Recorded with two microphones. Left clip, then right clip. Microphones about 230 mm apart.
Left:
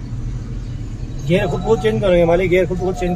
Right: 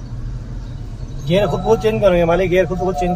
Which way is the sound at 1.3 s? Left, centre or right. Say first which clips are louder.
Right 2 dB; centre.